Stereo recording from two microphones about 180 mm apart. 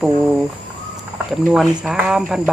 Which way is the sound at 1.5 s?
Centre (ahead or behind).